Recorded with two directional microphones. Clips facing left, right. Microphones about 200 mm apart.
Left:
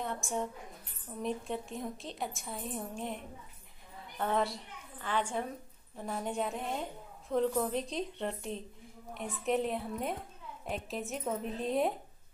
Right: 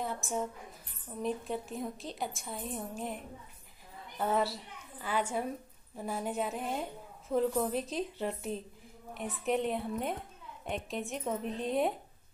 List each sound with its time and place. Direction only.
0.0 s a woman's voice: 5° right (ahead or behind)
4.2 s a woman's voice: 5° right (ahead or behind)